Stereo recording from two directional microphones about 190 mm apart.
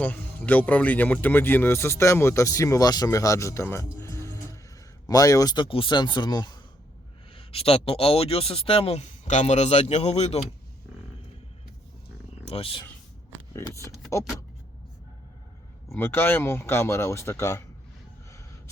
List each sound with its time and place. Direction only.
0.0 s a man's voice: 10° left (ahead or behind); by 10.4 s 35° left (ahead or behind)
12.5 s speech: 30° left (ahead or behind)
13.5 s speech: 15° left (ahead or behind)
15.9 s speech: 10° left (ahead or behind)